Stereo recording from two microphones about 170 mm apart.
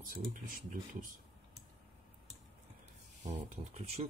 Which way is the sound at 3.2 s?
40° right (ahead or behind).